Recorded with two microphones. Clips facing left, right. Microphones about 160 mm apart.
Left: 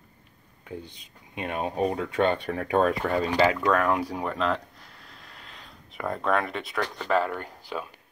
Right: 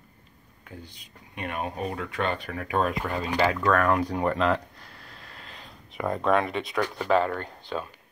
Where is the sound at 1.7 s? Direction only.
35° left (ahead or behind).